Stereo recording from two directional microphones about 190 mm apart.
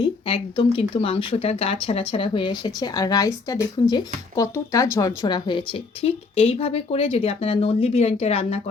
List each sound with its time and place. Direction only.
0.0 s speech: 25° left (ahead or behind)